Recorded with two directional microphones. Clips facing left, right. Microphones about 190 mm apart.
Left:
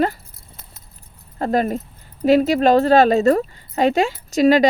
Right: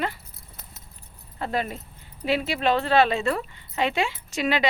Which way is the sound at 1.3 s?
45° left (ahead or behind).